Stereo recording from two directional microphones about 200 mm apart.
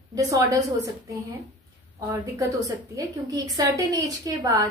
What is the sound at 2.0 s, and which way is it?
A woman's voice, 15° right (ahead or behind).